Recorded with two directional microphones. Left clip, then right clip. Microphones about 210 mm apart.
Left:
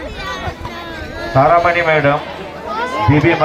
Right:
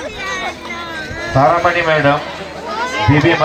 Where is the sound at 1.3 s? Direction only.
Centre (ahead or behind).